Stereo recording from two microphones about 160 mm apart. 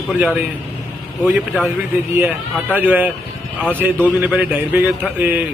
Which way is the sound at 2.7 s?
10° right (ahead or behind).